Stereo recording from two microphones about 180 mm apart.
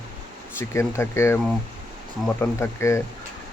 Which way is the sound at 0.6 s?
15° left (ahead or behind).